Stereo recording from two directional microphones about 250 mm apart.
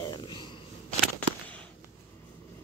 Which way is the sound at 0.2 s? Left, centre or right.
Centre.